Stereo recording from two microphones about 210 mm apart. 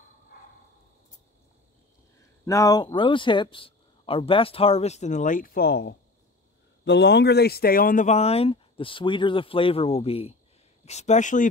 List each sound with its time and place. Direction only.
2.4 s speech: 15° left (ahead or behind); by 11.4 s 35° left (ahead or behind)